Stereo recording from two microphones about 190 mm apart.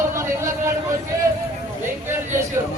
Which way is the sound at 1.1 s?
15° right (ahead or behind).